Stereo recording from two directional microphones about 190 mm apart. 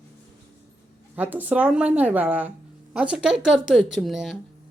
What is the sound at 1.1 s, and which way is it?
A woman's voice, 10° right (ahead or behind).